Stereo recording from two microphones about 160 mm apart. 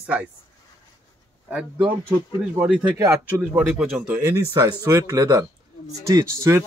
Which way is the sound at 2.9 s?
20° right (ahead or behind).